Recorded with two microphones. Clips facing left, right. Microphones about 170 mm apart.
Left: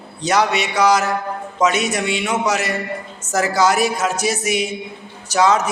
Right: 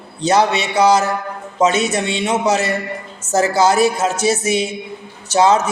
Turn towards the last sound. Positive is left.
turn(degrees=-30)  # may be behind; listen again after turning